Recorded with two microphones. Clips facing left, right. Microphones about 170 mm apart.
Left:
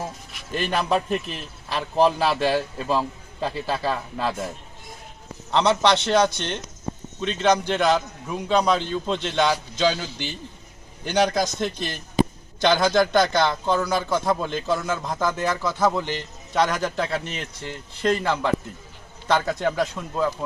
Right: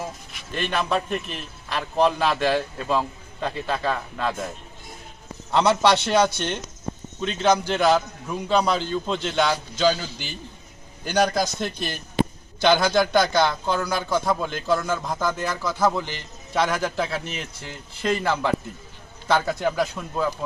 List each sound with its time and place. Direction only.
0.6 s a man's voice: 35° left (ahead or behind)
0.9 s a man's voice: centre (ahead or behind)
5.5 s a man's voice: 10° right (ahead or behind)